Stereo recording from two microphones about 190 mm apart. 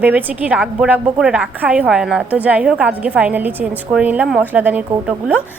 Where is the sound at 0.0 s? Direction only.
10° right (ahead or behind).